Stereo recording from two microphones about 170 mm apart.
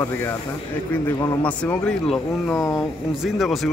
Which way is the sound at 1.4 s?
5° left (ahead or behind).